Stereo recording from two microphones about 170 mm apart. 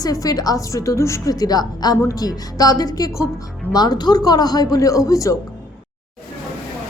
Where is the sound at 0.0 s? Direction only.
20° left (ahead or behind).